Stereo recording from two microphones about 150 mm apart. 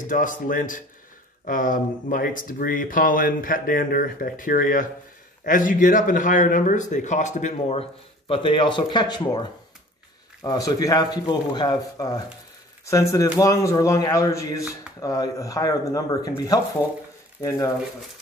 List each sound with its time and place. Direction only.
0.0 s a man's voice: 60° left (ahead or behind)
7.6 s a man's voice: 40° left (ahead or behind); by 17.6 s 20° left (ahead or behind)